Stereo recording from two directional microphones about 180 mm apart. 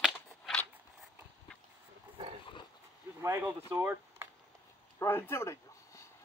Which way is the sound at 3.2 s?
15° right (ahead or behind).